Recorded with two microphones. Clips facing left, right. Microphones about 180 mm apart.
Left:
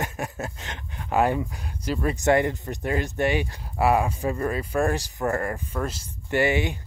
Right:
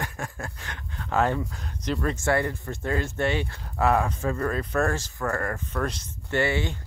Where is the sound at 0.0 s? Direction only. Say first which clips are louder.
Left 4 dB; 20° left (ahead or behind).